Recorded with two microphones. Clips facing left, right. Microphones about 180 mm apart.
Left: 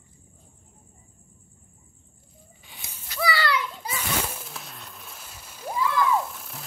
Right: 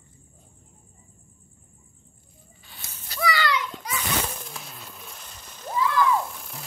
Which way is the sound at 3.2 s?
30° left (ahead or behind).